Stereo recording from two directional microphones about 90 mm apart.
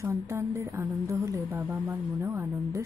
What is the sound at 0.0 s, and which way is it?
A woman's voice, 35° right (ahead or behind).